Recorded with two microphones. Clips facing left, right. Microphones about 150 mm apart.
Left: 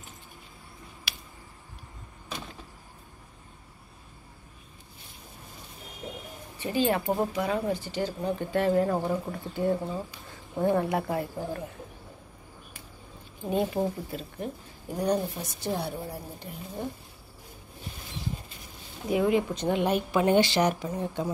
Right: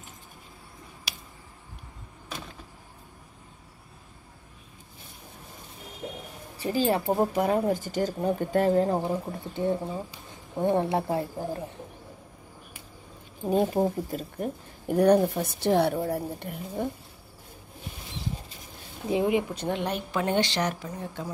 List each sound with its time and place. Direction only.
6.6 s a woman's voice: 35° right (ahead or behind)
7.3 s speech: 45° right (ahead or behind)
8.9 s speech: 20° right (ahead or behind)
13.5 s a woman's voice: 40° right (ahead or behind)
14.9 s a woman's voice: 60° right (ahead or behind)
19.0 s speech: 20° right (ahead or behind)
19.7 s speech: 10° left (ahead or behind)